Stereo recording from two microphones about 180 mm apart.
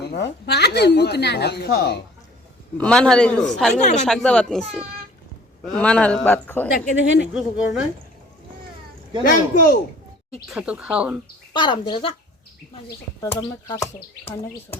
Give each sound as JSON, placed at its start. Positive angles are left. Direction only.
{"t": 0.0, "sound": "a woman's voice", "side_deg": 65}
{"t": 2.7, "sound": "a man's voice", "side_deg": 5}
{"t": 6.9, "sound": "a woman's voice", "side_deg": 80}
{"t": 7.3, "sound": "a man's voice", "side_deg": -5}
{"t": 9.2, "sound": "speech", "side_deg": 55}
{"t": 10.5, "sound": "speech", "side_deg": -5}
{"t": 11.5, "sound": "speech", "side_deg": 25}
{"t": 13.4, "sound": "speech", "side_deg": 20}
{"t": 13.9, "sound": "speech", "side_deg": 35}